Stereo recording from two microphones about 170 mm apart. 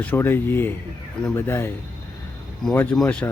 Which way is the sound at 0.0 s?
10° left (ahead or behind).